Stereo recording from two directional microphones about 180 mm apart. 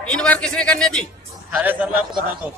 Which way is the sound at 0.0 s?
5° left (ahead or behind).